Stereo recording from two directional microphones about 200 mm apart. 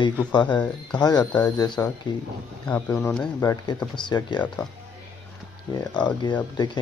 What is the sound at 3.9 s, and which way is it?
Speech, 20° left (ahead or behind).